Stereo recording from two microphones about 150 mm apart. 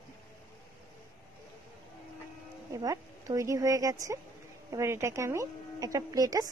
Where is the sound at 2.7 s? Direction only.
25° right (ahead or behind).